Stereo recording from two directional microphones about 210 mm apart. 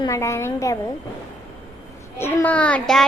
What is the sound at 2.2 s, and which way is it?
Speech, 10° left (ahead or behind).